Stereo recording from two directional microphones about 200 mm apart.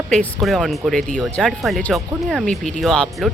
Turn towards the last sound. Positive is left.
turn(degrees=0)  # may be behind; listen again after turning